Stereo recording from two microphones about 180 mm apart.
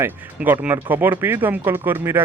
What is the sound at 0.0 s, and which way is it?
Speech, 10° right (ahead or behind).